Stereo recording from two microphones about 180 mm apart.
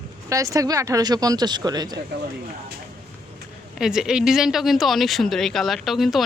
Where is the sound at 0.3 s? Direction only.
20° right (ahead or behind).